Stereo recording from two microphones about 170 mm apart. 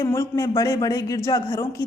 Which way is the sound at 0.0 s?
15° left (ahead or behind).